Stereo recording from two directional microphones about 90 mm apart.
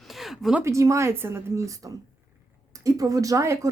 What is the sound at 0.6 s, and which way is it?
Speech, 35° right (ahead or behind).